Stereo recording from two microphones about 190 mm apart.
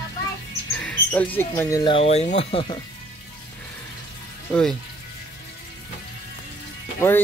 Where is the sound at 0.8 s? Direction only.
5° left (ahead or behind).